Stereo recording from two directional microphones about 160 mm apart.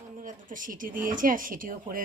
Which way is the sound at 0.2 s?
55° right (ahead or behind).